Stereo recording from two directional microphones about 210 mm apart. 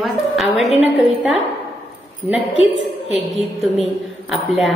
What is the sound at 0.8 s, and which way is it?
Speech, centre (ahead or behind).